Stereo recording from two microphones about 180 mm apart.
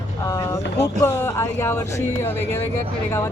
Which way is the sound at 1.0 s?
15° left (ahead or behind).